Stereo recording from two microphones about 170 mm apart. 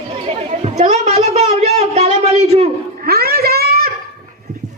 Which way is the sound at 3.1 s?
65° right (ahead or behind).